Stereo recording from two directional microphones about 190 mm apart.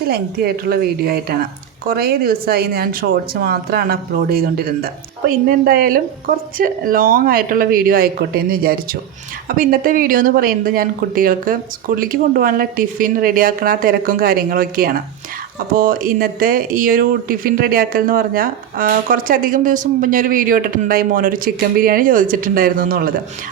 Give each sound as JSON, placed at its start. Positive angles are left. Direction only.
{"t": 0.0, "sound": "speech", "side_deg": -55}